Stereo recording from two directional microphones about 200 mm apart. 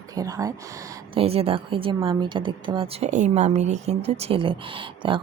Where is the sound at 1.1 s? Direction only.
30° right (ahead or behind).